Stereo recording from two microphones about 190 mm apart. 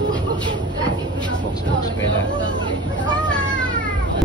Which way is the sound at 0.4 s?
25° right (ahead or behind).